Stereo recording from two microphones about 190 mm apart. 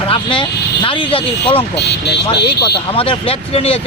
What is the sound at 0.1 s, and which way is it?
Speech, 25° left (ahead or behind).